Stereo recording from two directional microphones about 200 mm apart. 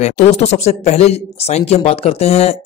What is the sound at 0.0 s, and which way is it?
Speech, 35° left (ahead or behind).